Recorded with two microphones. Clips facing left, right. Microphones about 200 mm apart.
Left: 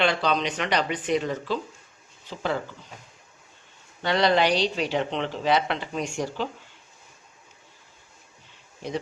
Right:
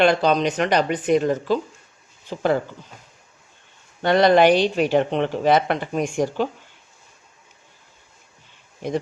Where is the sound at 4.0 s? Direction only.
50° right (ahead or behind).